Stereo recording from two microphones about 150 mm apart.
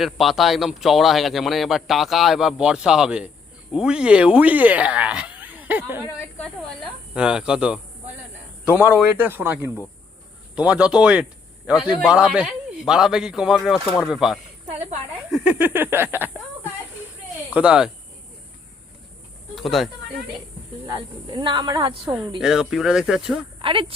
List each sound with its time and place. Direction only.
0.0 s speech: centre (ahead or behind)
17.5 s speech: 10° right (ahead or behind)
19.5 s speech: centre (ahead or behind)
20.8 s speech: 25° right (ahead or behind)
22.4 s speech: 5° right (ahead or behind)
23.6 s speech: 35° right (ahead or behind)